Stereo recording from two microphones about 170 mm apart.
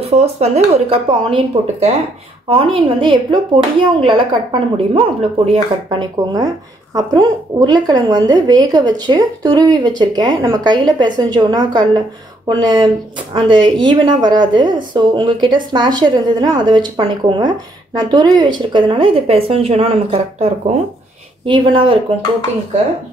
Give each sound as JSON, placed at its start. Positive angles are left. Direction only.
{"t": 0.1, "sound": "a woman's voice", "side_deg": -40}